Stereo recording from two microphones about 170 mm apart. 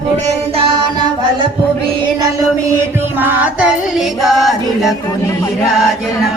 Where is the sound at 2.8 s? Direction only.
15° right (ahead or behind).